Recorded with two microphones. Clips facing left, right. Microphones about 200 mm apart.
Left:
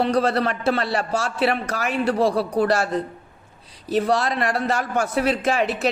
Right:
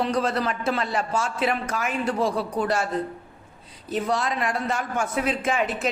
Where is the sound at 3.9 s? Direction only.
75° left (ahead or behind).